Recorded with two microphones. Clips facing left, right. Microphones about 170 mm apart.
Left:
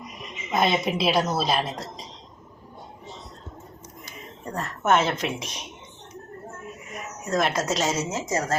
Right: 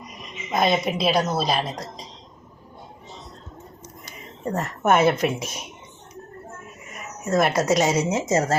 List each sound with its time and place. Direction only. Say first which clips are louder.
0.5 s a woman's voice: right 2 dB; centre (ahead or behind)
4.5 s a woman's voice: right 2 dB; 20° right (ahead or behind)
4.9 s speech: right 4 dB; 10° right (ahead or behind)
7.3 s speech: right 5 dB; 10° right (ahead or behind); by 8.5 s 25° right (ahead or behind)